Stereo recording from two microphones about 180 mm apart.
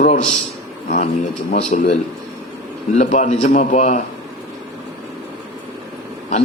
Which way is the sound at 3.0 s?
40° left (ahead or behind).